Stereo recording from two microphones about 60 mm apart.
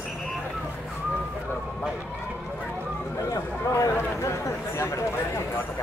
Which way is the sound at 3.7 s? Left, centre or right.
Left.